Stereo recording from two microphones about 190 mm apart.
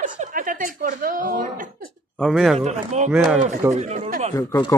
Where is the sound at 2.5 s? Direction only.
35° right (ahead or behind).